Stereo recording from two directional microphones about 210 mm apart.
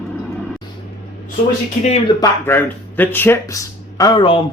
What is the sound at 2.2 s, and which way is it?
Speech, 10° left (ahead or behind).